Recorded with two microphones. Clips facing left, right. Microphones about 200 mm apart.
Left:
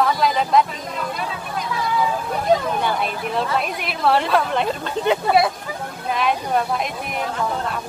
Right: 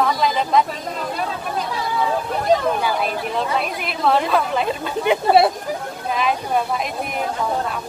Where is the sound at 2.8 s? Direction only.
Centre (ahead or behind).